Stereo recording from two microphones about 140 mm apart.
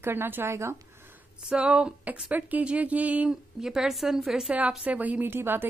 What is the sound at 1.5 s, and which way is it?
Speech, 5° right (ahead or behind).